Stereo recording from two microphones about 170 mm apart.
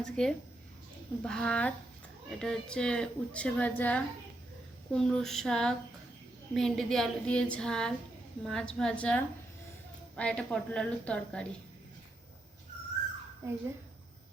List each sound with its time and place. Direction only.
0.0 s a woman's voice: 5° left (ahead or behind)
13.4 s a child's voice: 15° right (ahead or behind)